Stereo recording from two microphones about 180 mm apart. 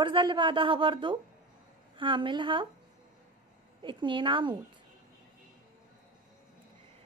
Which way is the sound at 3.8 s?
25° right (ahead or behind).